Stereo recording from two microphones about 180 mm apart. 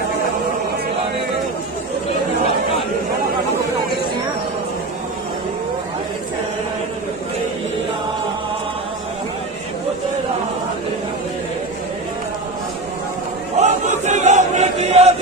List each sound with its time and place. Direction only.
13.6 s chant: 40° right (ahead or behind)